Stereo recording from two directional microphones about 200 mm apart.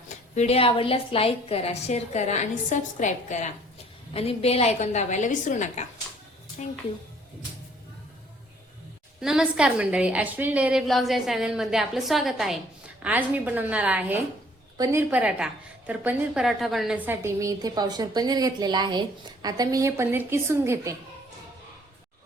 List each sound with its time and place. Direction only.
0.3 s a woman's voice: 30° left (ahead or behind)
9.2 s a woman's voice: 5° right (ahead or behind)